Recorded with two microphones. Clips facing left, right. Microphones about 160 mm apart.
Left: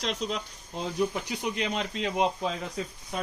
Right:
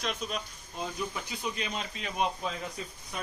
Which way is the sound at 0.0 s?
80° left.